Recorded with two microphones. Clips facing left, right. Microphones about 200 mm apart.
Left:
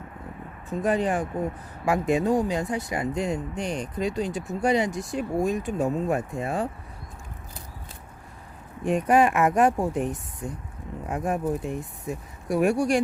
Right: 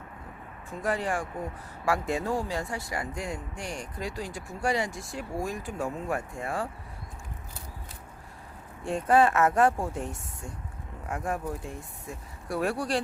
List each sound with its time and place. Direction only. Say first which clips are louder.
0.7 s speech: left 6 dB; 20° left (ahead or behind)
8.8 s speech: left 2 dB; 15° left (ahead or behind)